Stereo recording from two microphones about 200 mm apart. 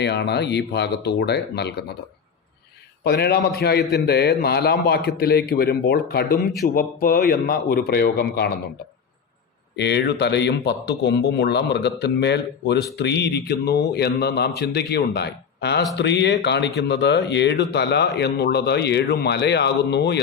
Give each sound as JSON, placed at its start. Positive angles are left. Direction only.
{"t": 0.0, "sound": "a man's voice", "side_deg": 55}
{"t": 3.0, "sound": "speech", "side_deg": 55}
{"t": 6.3, "sound": "a man's voice", "side_deg": 0}
{"t": 6.7, "sound": "speech", "side_deg": 45}
{"t": 9.7, "sound": "a man's voice", "side_deg": 60}